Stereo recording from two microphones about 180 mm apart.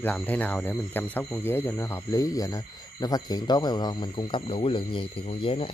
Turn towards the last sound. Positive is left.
turn(degrees=30)  # may be behind; listen again after turning